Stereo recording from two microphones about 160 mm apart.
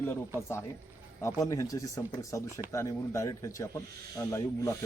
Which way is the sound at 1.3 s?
20° left (ahead or behind).